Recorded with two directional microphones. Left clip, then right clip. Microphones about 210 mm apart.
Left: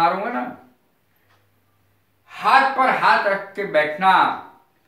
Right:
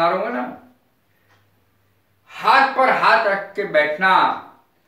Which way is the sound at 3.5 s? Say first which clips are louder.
Right 2 dB; 20° left (ahead or behind).